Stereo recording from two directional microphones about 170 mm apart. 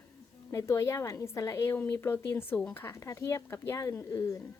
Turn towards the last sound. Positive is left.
turn(degrees=20)  # may be behind; listen again after turning